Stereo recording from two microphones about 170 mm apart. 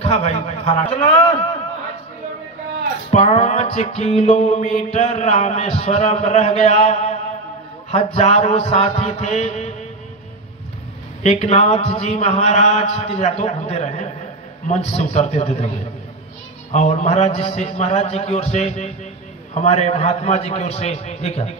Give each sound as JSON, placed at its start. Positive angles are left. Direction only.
{"t": 0.0, "sound": "a man's voice", "side_deg": 40}
{"t": 3.1, "sound": "music", "side_deg": 40}
{"t": 11.2, "sound": "music", "side_deg": 40}
{"t": 16.7, "sound": "music", "side_deg": 40}